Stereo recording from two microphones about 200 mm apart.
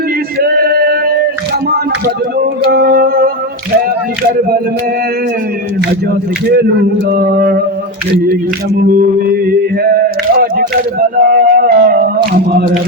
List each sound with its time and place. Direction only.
0.3 s male singing: 50° right (ahead or behind)
2.4 s music: 50° right (ahead or behind)
7.1 s music: 50° right (ahead or behind)
9.2 s music: 50° right (ahead or behind)
11.2 s music: 45° right (ahead or behind)